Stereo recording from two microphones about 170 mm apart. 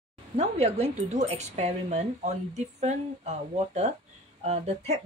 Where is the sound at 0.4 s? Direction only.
40° right (ahead or behind).